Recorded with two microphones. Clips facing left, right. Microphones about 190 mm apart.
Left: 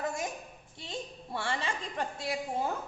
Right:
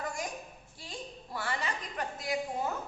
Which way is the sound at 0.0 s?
25° left (ahead or behind).